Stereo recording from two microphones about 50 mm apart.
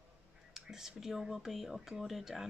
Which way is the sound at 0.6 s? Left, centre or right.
Centre.